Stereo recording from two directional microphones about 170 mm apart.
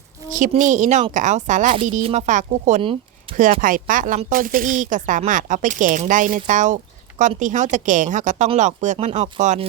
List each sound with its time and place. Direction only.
0.3 s speech: 50° right (ahead or behind)
3.3 s speech: 30° right (ahead or behind)
3.6 s speech: 50° right (ahead or behind)